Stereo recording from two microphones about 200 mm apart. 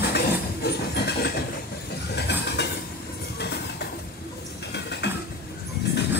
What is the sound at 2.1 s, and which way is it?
Train, 55° left (ahead or behind).